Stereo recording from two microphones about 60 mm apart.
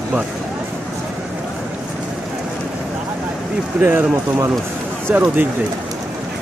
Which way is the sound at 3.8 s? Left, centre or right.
Right.